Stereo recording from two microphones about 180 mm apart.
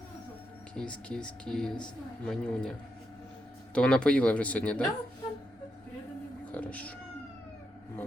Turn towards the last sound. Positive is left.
turn(degrees=10)  # may be behind; listen again after turning